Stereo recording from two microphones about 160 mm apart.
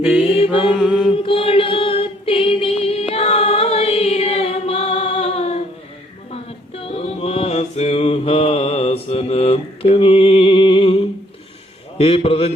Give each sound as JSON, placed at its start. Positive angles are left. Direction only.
{"t": 0.0, "sound": "mantra", "side_deg": -5}
{"t": 0.3, "sound": "mantra", "side_deg": 35}
{"t": 0.8, "sound": "mantra", "side_deg": -5}
{"t": 1.1, "sound": "music", "side_deg": 35}
{"t": 3.1, "sound": "chant", "side_deg": 40}
{"t": 6.3, "sound": "mantra", "side_deg": 35}